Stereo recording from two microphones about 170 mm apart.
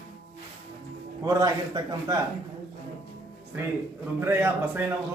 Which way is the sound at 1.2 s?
20° right (ahead or behind).